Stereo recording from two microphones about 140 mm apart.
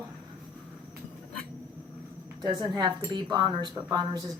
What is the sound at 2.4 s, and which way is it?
Speech, 30° right (ahead or behind).